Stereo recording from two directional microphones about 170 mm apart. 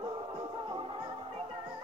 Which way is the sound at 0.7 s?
30° right (ahead or behind).